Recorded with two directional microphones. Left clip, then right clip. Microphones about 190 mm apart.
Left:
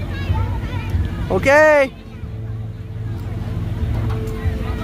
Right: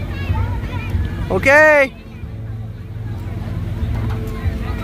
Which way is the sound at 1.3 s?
10° left (ahead or behind).